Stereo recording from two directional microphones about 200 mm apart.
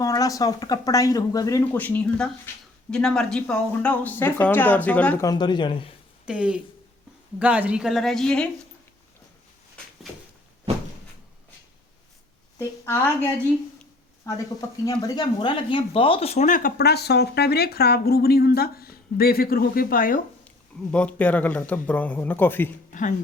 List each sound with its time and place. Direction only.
0.0 s speech: 15° left (ahead or behind)
5.3 s speech: 20° left (ahead or behind)
6.2 s speech: 5° right (ahead or behind)
12.5 s speech: 10° left (ahead or behind); by 20.2 s 45° left (ahead or behind)
20.9 s speech: 5° left (ahead or behind)
22.9 s a sound: 40° left (ahead or behind)